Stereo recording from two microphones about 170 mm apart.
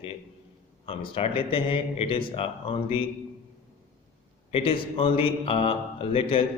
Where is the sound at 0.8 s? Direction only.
30° left (ahead or behind).